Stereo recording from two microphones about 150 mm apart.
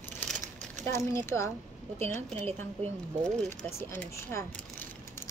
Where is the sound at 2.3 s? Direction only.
45° right (ahead or behind).